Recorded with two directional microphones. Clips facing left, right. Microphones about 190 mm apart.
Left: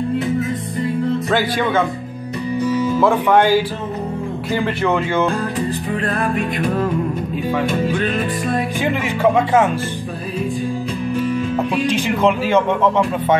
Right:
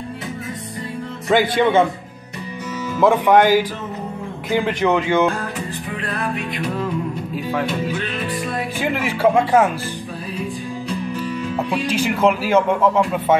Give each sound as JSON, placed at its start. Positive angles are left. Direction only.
{"t": 1.3, "sound": "speech", "side_deg": -20}
{"t": 3.0, "sound": "speech", "side_deg": -15}
{"t": 5.9, "sound": "music", "side_deg": 45}
{"t": 8.8, "sound": "speech", "side_deg": -5}
{"t": 11.7, "sound": "speech", "side_deg": -5}